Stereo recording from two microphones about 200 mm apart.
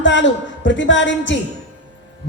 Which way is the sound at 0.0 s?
65° left (ahead or behind).